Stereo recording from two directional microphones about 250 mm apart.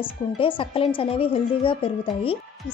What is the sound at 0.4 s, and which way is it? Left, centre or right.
A woman's voice, left.